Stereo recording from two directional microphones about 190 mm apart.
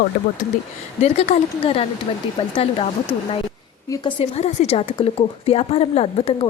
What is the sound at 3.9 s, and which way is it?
Speech, 25° left (ahead or behind).